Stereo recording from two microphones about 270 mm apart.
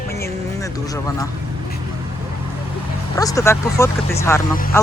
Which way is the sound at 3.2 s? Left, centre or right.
Centre.